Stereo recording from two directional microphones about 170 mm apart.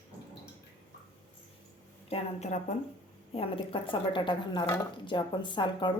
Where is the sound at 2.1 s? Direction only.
40° left (ahead or behind).